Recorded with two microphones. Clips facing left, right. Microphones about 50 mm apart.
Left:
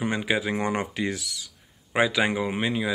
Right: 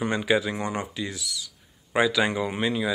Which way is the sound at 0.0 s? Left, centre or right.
Centre.